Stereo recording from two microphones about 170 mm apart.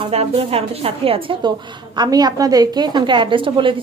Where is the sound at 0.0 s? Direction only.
35° right (ahead or behind).